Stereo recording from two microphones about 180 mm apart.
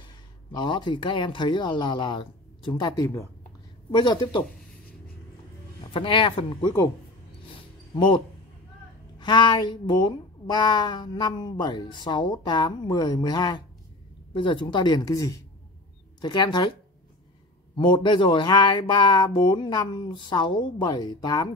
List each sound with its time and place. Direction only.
0.6 s speech: 25° left (ahead or behind)
5.9 s speech: 30° left (ahead or behind)
7.9 s speech: 25° left (ahead or behind)
9.2 s speech: 25° left (ahead or behind)
17.7 s speech: 25° left (ahead or behind)